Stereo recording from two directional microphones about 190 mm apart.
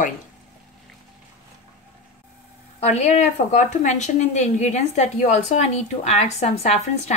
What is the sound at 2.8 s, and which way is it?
A woman's voice, 35° left (ahead or behind).